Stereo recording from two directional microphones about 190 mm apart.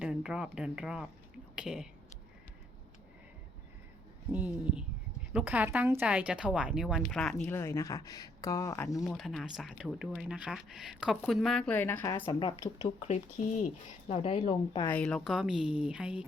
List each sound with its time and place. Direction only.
0.0 s speech: 5° right (ahead or behind)
4.3 s a woman's voice: 10° right (ahead or behind); by 9.0 s 15° left (ahead or behind)
9.0 s speech: centre (ahead or behind)
12.4 s speech: 25° left (ahead or behind)
14.8 s speech: 5° left (ahead or behind)